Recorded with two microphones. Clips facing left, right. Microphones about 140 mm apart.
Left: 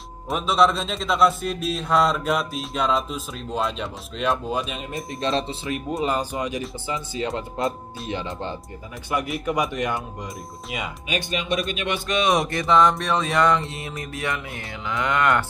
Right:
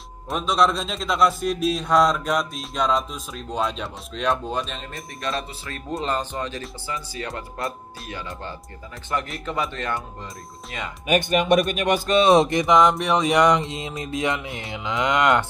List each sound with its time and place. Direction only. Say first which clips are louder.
0.3 s a man's voice: left 1 dB; centre (ahead or behind)
4.9 s speech: left 5 dB; 25° left (ahead or behind)
5.9 s speech: even; 10° left (ahead or behind)
9.1 s speech: left 3 dB; 10° left (ahead or behind)
11.1 s speech: right 8 dB; 55° right (ahead or behind); by 12.4 s 30° right (ahead or behind)
12.4 s mantra: right 1 dB; 15° right (ahead or behind)